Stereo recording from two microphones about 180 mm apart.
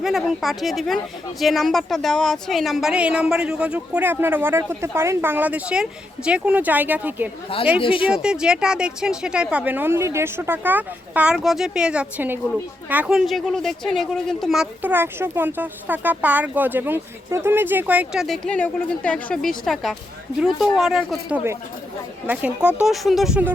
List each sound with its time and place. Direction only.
0.0 s speech: centre (ahead or behind)
7.8 s speech: 30° left (ahead or behind)
8.1 s speech: 5° right (ahead or behind)